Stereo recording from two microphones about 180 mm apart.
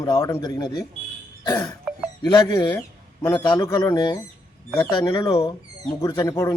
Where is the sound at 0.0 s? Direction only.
20° left (ahead or behind).